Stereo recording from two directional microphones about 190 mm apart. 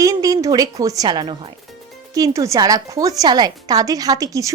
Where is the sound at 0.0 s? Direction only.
20° right (ahead or behind).